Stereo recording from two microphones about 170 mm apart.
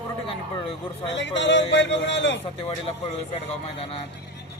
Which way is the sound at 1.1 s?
90° left.